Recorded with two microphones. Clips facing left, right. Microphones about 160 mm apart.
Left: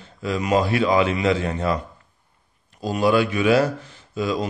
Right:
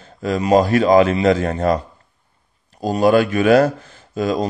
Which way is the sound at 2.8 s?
45° right (ahead or behind).